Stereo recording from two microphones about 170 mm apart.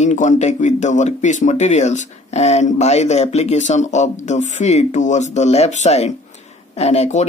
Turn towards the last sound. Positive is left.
turn(degrees=40)  # may be behind; listen again after turning